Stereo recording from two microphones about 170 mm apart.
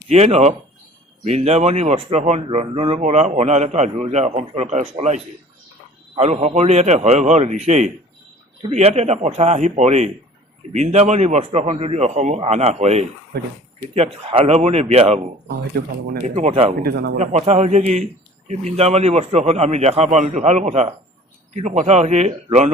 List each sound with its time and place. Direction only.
0.1 s a man's voice: 40° right (ahead or behind)
13.3 s speech: 70° right (ahead or behind)
13.9 s a man's voice: 35° right (ahead or behind)
16.2 s a man's voice: 40° right (ahead or behind)
16.8 s speech: 65° right (ahead or behind)
17.2 s a man's voice: 40° right (ahead or behind)